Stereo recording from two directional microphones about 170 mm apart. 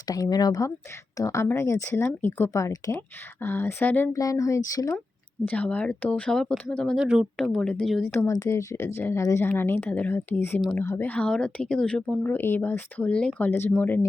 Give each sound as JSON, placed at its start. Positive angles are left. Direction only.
{"t": 0.1, "sound": "speech", "side_deg": 20}
{"t": 8.1, "sound": "speech", "side_deg": 15}